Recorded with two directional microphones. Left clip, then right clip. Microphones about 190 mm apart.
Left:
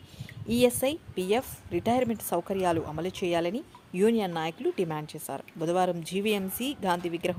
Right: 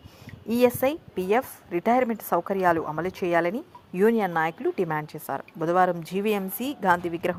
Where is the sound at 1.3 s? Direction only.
Centre (ahead or behind).